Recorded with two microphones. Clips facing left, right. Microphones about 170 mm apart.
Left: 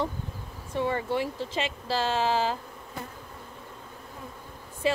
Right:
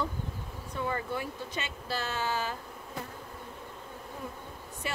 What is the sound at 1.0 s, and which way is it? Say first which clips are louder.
A woman's voice: left 7 dB; 90° left.